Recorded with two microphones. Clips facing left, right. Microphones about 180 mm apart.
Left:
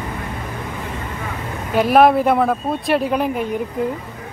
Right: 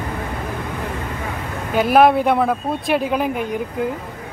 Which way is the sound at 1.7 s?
Centre (ahead or behind).